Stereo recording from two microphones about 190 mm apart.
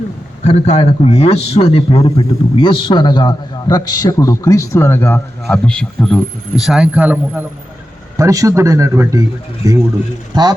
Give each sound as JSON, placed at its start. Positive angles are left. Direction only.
{"t": 0.4, "sound": "a man's voice", "side_deg": 35}